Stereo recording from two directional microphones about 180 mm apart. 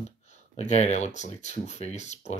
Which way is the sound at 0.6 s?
40° left (ahead or behind).